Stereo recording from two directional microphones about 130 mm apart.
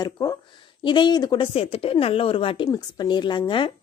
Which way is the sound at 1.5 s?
45° left (ahead or behind).